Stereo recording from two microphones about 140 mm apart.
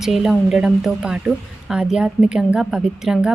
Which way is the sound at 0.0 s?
Centre (ahead or behind).